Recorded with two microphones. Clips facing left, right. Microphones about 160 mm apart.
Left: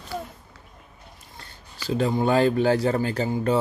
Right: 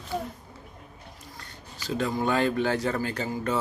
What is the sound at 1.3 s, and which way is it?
Speech, 30° left (ahead or behind).